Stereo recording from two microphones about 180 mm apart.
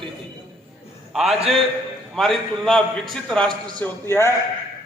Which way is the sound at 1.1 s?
Centre (ahead or behind).